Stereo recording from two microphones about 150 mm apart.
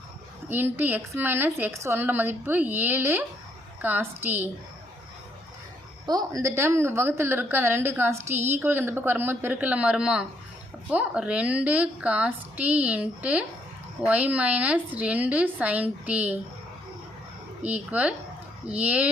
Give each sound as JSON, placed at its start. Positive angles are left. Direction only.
{"t": 0.4, "sound": "a woman's voice", "side_deg": -15}
{"t": 6.1, "sound": "a woman's voice", "side_deg": -25}
{"t": 17.6, "sound": "a woman's voice", "side_deg": -10}